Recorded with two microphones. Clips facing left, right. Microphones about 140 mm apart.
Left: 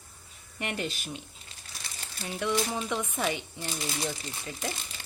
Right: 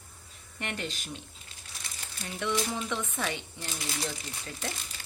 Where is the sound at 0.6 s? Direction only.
15° left (ahead or behind).